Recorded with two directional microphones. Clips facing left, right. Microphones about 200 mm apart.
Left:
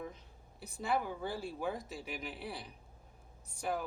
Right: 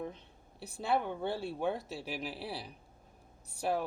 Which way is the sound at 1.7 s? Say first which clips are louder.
Right 3 dB; 65° right (ahead or behind).